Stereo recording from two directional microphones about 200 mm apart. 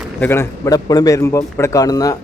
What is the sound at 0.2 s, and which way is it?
A man's voice, 10° left (ahead or behind).